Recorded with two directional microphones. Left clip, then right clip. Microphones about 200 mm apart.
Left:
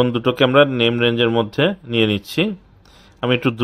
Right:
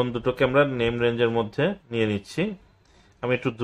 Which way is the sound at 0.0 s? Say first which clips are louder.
Left 7 dB; 40° left (ahead or behind).